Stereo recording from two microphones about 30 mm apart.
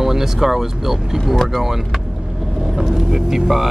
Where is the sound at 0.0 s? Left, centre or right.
Centre.